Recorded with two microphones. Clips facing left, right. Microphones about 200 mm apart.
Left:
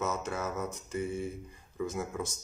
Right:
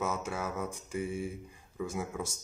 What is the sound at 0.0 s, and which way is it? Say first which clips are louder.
Speech: left 1 dB; 10° right (ahead or behind).